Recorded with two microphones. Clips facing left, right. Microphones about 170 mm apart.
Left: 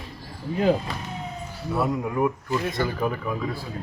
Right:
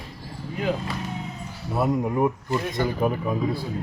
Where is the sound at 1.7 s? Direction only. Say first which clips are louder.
Right 2 dB; 25° right (ahead or behind).